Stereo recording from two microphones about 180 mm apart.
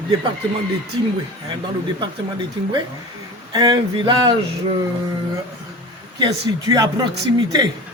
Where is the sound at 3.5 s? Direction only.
25° right (ahead or behind).